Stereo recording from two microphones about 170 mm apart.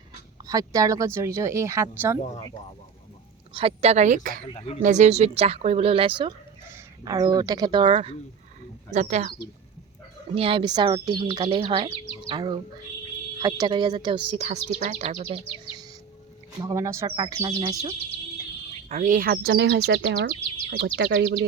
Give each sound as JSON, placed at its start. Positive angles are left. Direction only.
{"t": 0.4, "sound": "speech", "side_deg": -20}
{"t": 3.5, "sound": "speech", "side_deg": -35}
{"t": 4.4, "sound": "speech", "side_deg": 35}
{"t": 4.8, "sound": "speech", "side_deg": -45}
{"t": 8.9, "sound": "speech", "side_deg": -40}
{"t": 10.3, "sound": "speech", "side_deg": -35}
{"t": 16.6, "sound": "speech", "side_deg": -20}
{"t": 18.9, "sound": "speech", "side_deg": -50}